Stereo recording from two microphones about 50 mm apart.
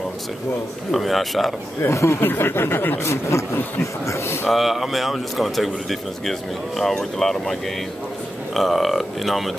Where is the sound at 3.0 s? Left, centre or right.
Left.